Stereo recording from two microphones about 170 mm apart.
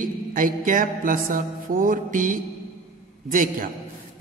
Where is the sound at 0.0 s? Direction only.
50° right (ahead or behind).